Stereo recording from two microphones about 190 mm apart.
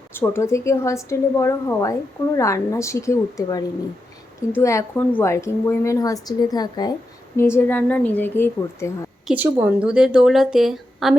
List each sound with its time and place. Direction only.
0.1 s a woman's voice: 10° left (ahead or behind)
9.2 s a woman's voice: 10° right (ahead or behind)